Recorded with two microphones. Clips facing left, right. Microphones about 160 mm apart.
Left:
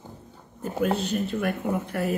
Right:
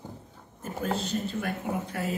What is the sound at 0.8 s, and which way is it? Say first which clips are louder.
Speech: left 5 dB; 60° left (ahead or behind).